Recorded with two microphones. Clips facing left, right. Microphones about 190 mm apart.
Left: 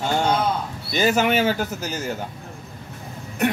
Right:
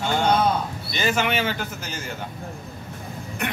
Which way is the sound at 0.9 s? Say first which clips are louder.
Left 5 dB; 40° left (ahead or behind).